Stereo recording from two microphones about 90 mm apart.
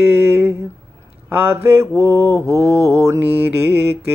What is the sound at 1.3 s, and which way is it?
Mantra, 25° right (ahead or behind).